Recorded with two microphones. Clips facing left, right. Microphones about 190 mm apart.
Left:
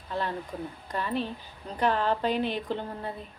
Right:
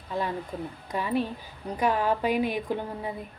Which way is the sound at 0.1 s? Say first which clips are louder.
Right 2 dB; 10° right (ahead or behind).